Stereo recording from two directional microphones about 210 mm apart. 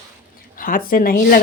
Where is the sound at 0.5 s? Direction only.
40° left (ahead or behind).